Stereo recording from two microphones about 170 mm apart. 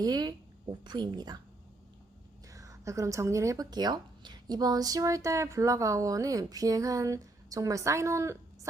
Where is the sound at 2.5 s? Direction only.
20° right (ahead or behind).